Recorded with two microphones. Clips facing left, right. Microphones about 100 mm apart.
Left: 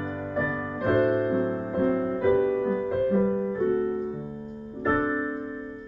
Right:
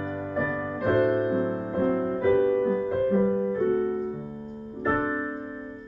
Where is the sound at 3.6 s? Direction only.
45° right (ahead or behind).